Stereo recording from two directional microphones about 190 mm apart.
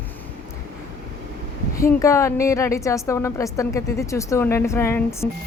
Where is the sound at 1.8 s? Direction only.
15° left (ahead or behind).